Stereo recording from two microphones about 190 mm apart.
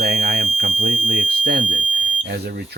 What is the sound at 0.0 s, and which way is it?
Fire alarm, 55° right (ahead or behind).